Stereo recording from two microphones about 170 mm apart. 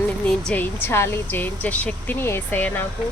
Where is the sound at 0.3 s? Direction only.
10° left (ahead or behind).